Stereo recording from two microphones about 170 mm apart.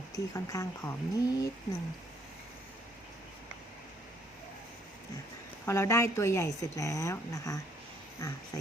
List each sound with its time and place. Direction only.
0.1 s speech: 20° left (ahead or behind)
5.6 s a woman's voice: 15° left (ahead or behind)